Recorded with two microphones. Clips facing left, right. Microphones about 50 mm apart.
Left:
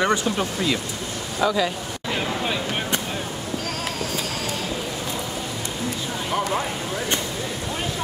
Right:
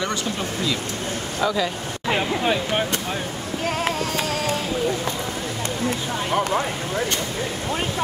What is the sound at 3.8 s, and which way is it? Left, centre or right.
Music, right.